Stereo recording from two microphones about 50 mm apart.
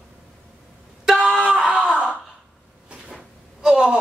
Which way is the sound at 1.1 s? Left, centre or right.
Centre.